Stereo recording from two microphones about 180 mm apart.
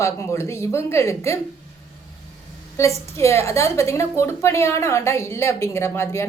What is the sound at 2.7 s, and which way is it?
A woman's voice, 15° left (ahead or behind).